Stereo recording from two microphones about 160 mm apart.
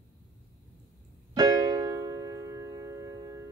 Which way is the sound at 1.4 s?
20° right (ahead or behind).